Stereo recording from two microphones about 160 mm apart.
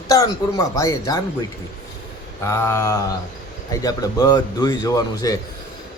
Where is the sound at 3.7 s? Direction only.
25° left (ahead or behind).